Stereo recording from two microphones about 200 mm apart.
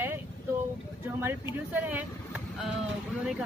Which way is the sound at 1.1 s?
10° right (ahead or behind).